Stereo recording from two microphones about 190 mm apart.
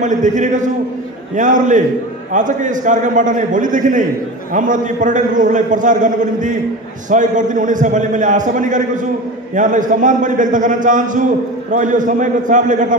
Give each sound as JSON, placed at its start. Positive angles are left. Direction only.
{"t": 0.0, "sound": "a man's voice", "side_deg": -40}